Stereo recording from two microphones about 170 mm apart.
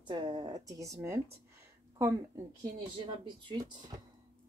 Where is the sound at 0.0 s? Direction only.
25° right (ahead or behind).